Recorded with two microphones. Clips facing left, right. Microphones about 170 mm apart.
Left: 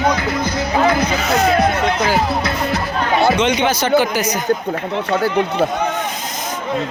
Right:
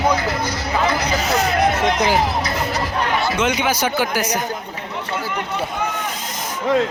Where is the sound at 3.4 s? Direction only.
5° right (ahead or behind).